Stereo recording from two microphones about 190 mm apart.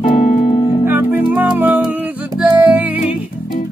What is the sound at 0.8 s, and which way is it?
Music, 10° right (ahead or behind).